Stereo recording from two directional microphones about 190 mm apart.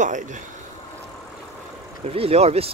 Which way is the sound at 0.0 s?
40° right (ahead or behind).